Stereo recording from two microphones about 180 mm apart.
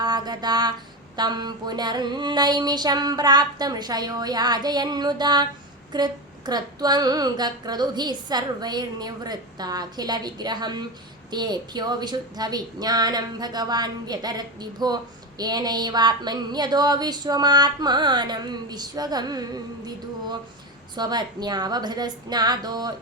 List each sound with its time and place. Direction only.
0.0 s a sound: 25° right (ahead or behind)
1.1 s a woman's voice: 25° right (ahead or behind)
20.9 s a woman's voice: 25° right (ahead or behind)